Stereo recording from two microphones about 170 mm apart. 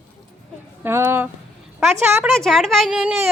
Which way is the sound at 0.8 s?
15° right (ahead or behind).